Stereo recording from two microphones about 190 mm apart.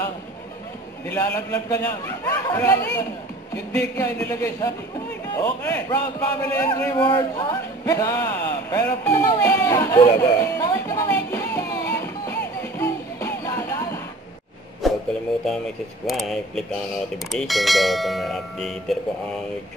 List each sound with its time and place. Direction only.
1.1 s a man's voice: 15° left (ahead or behind)
14.8 s a sound: centre (ahead or behind)
15.4 s speech: centre (ahead or behind)